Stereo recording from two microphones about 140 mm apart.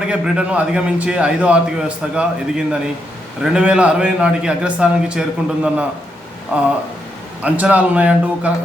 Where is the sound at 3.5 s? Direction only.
5° right (ahead or behind).